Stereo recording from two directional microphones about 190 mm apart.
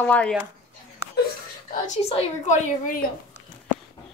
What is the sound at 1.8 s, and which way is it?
Speech, 35° left (ahead or behind).